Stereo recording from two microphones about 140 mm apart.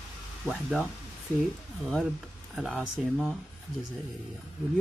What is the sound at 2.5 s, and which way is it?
Speech, 5° right (ahead or behind).